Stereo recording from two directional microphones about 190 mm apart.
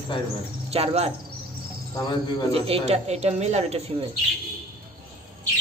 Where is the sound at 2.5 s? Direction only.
30° right (ahead or behind).